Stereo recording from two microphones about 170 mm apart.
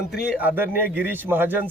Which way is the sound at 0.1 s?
5° right (ahead or behind).